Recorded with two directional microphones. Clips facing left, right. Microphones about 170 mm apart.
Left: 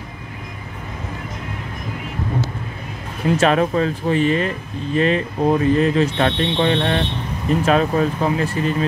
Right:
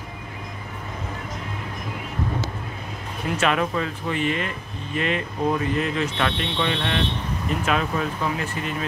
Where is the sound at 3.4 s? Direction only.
35° left (ahead or behind).